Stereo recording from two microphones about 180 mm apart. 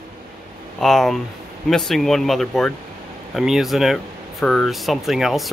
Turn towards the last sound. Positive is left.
turn(degrees=0)  # may be behind; listen again after turning